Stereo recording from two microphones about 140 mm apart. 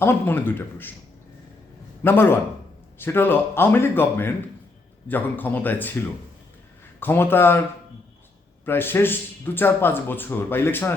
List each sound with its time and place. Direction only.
0.0 s a man's voice: 15° left (ahead or behind)
2.0 s a man's voice: 15° left (ahead or behind)
7.0 s a man's voice: 15° left (ahead or behind)
8.6 s a man's voice: 15° left (ahead or behind)